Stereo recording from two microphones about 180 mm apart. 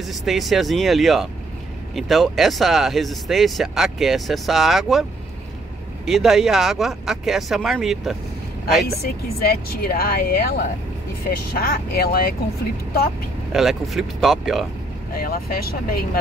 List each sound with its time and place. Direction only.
0.0 s speech: centre (ahead or behind)
6.0 s speech: centre (ahead or behind)
8.8 s speech: 60° left (ahead or behind)
11.5 s speech: 55° left (ahead or behind)
13.5 s speech: centre (ahead or behind)
15.1 s speech: 55° left (ahead or behind)